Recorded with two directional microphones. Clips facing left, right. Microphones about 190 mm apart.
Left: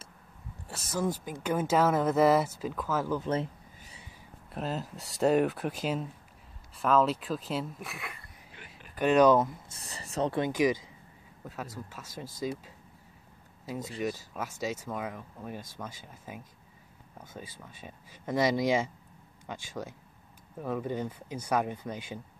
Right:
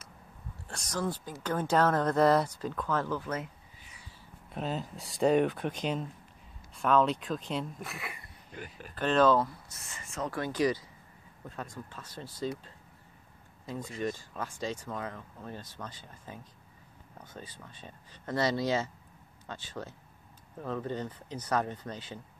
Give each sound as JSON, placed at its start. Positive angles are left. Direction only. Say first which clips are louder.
{"t": 0.7, "sound": "speech", "louder": "left 3 dB", "side_deg": 5}
{"t": 3.2, "sound": "a sound", "louder": "left 5 dB", "side_deg": 30}
{"t": 4.5, "sound": "speech", "louder": "even", "side_deg": 0}
{"t": 8.9, "sound": "speech", "louder": "left 3 dB", "side_deg": 15}
{"t": 9.8, "sound": "speech", "louder": "left 6 dB", "side_deg": 35}
{"t": 10.3, "sound": "speech", "louder": "left 1 dB", "side_deg": 15}
{"t": 14.0, "sound": "speech", "louder": "even", "side_deg": 5}